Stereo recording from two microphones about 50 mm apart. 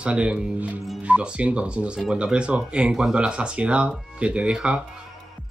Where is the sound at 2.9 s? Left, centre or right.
Centre.